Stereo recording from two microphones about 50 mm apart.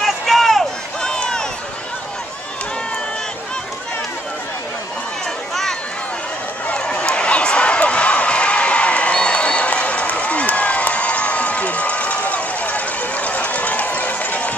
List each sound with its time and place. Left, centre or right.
0.0 s run: centre
1.0 s run: centre
5.5 s run: centre
6.7 s a sound: left